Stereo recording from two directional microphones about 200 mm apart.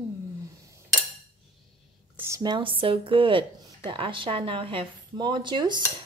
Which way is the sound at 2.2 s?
15° right (ahead or behind).